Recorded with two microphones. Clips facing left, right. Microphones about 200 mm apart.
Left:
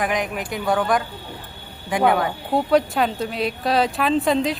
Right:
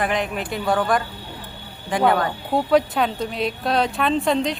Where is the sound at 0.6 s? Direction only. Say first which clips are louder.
Even; centre (ahead or behind).